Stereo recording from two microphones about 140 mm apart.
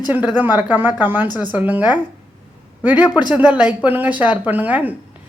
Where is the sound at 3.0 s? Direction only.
30° left (ahead or behind).